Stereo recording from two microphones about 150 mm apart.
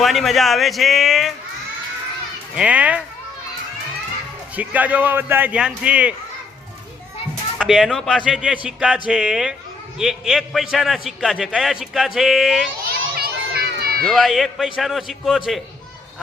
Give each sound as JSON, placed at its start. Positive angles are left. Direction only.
{"t": 0.0, "sound": "a man's voice", "side_deg": 0}
{"t": 2.6, "sound": "a man's voice", "side_deg": -10}
{"t": 4.5, "sound": "a man's voice", "side_deg": -10}
{"t": 7.6, "sound": "a man's voice", "side_deg": 0}
{"t": 13.1, "sound": "a sound", "side_deg": -90}
{"t": 14.0, "sound": "a man's voice", "side_deg": 0}